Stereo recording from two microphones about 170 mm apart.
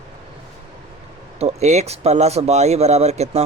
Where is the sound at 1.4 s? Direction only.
40° right (ahead or behind).